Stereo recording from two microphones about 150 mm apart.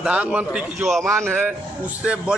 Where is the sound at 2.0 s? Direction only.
5° right (ahead or behind).